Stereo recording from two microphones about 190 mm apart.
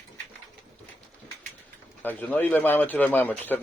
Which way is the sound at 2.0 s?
10° left (ahead or behind).